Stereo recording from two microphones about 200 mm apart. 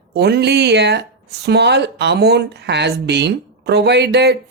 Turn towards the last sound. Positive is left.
turn(degrees=-55)  # may be behind; listen again after turning